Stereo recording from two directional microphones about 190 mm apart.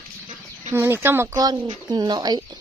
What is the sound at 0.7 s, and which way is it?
Speech, 10° right (ahead or behind).